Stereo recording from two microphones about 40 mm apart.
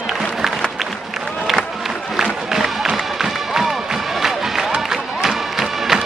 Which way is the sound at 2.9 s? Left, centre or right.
Centre.